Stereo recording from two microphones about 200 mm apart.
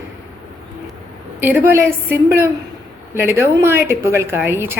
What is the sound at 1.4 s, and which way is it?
A woman's voice, 10° right (ahead or behind).